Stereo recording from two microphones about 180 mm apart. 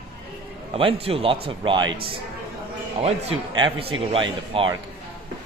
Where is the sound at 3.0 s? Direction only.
30° right (ahead or behind).